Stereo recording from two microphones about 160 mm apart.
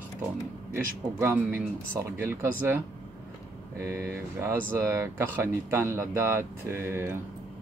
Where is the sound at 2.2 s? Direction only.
15° right (ahead or behind).